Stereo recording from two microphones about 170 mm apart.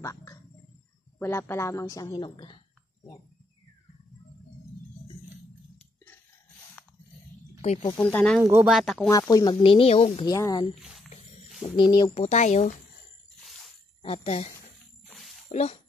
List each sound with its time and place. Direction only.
0.0 s a sound: 15° left (ahead or behind)
1.2 s a woman's voice: 15° left (ahead or behind)
8.0 s speech: 5° left (ahead or behind)
9.1 s speech: 20° left (ahead or behind)
10.2 s a woman's voice: 20° left (ahead or behind)
10.7 s speech: centre (ahead or behind)
11.6 s speech: 25° left (ahead or behind); by 12.7 s 45° left (ahead or behind)
14.0 s speech: 35° left (ahead or behind)
15.0 s a sound: centre (ahead or behind)
15.5 s speech: 40° left (ahead or behind)